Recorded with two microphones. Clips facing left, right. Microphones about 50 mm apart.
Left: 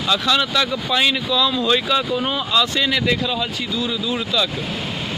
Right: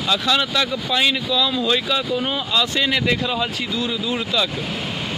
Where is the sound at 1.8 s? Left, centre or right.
Centre.